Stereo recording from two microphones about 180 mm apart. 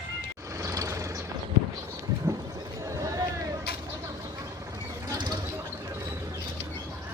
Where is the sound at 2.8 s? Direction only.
20° right (ahead or behind).